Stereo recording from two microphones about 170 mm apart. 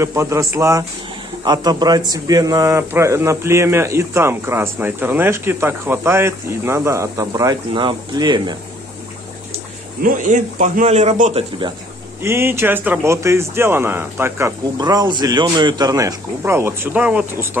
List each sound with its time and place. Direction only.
0.0 s speech: 15° right (ahead or behind)
10.0 s speech: 50° right (ahead or behind)
12.2 s speech: 15° right (ahead or behind)
14.8 s speech: 25° right (ahead or behind)